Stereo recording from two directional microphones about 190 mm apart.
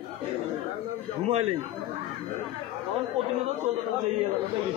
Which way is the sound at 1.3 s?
35° right (ahead or behind).